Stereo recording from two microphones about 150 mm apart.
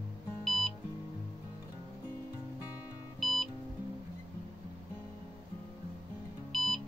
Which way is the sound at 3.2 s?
Centre (ahead or behind).